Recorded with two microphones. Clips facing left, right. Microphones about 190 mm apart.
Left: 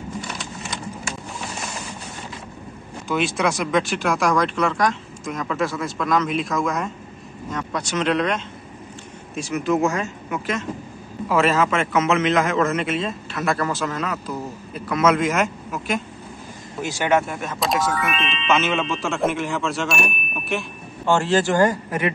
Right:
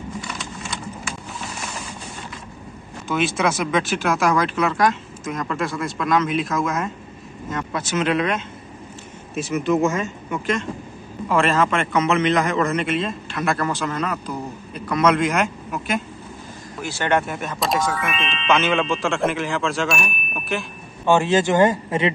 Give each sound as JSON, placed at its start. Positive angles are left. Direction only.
{"t": 3.1, "sound": "a man's voice", "side_deg": 0}
{"t": 16.8, "sound": "speech", "side_deg": 10}
{"t": 17.3, "sound": "a man's voice", "side_deg": 0}
{"t": 21.0, "sound": "speech", "side_deg": -15}